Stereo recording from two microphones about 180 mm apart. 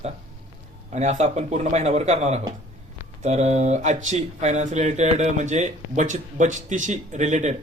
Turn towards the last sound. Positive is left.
turn(degrees=-40)  # may be behind; listen again after turning